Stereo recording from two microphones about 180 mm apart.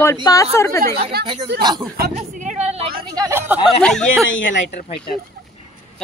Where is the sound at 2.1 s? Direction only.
40° right (ahead or behind).